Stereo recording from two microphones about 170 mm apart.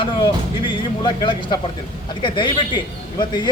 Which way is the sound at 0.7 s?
25° left (ahead or behind).